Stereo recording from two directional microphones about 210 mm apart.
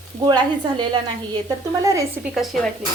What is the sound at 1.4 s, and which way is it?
Speech, 15° right (ahead or behind).